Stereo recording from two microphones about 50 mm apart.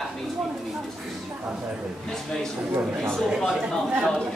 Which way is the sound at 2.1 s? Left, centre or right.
Centre.